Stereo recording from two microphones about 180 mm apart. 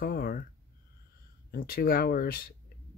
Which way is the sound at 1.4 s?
55° left (ahead or behind).